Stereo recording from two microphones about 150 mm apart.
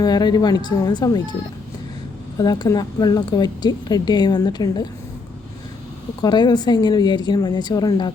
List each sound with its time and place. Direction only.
0.0 s a woman's voice: 25° left (ahead or behind)
2.4 s a woman's voice: 25° left (ahead or behind)
6.2 s a woman's voice: 30° left (ahead or behind)